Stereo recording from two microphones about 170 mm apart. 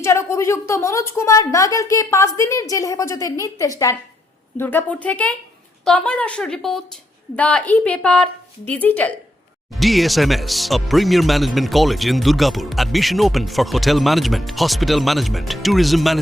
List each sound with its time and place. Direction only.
0.0 s a woman's voice: 15° left (ahead or behind); by 16.2 s centre (ahead or behind)